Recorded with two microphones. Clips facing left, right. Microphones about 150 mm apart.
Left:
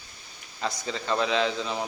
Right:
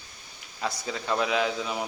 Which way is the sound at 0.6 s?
5° right (ahead or behind).